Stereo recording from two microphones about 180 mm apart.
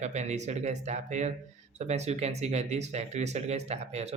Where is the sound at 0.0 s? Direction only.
40° right (ahead or behind).